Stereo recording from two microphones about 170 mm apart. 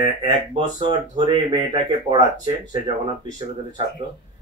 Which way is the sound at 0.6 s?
30° right (ahead or behind).